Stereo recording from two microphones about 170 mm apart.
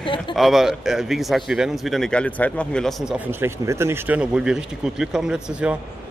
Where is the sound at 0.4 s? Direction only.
Centre (ahead or behind).